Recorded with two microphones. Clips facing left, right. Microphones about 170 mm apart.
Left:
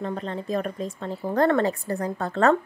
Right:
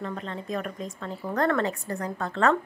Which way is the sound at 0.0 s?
35° left (ahead or behind).